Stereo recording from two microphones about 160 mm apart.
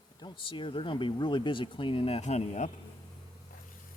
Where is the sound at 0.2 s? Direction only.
30° left (ahead or behind).